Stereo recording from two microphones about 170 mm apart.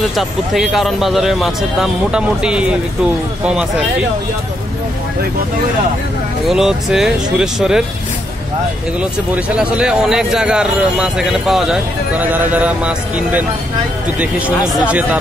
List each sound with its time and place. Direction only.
0.1 s speech: centre (ahead or behind)
6.4 s speech: 5° right (ahead or behind)
9.3 s speech: 5° right (ahead or behind)